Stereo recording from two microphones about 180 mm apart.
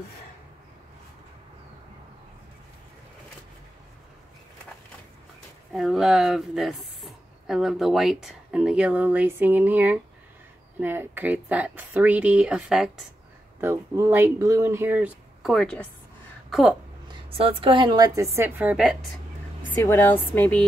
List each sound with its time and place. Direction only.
5.7 s speech: centre (ahead or behind)
13.6 s speech: 15° right (ahead or behind)
17.1 s a woman's voice: 30° right (ahead or behind); by 19.0 s 5° right (ahead or behind)
19.8 s speech: 15° left (ahead or behind)